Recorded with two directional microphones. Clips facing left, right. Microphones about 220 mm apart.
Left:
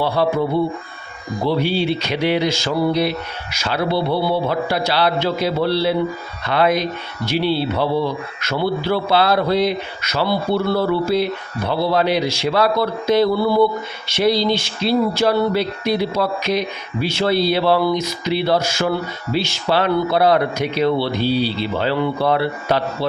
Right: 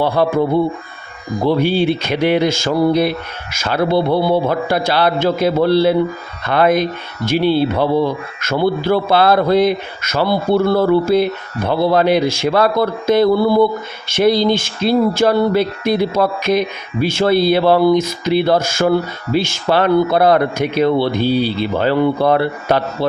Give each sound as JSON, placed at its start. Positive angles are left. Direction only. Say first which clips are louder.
{"t": 0.2, "sound": "speech", "louder": "right 1 dB", "side_deg": -50}
{"t": 1.5, "sound": "speech", "louder": "right 4 dB", "side_deg": -50}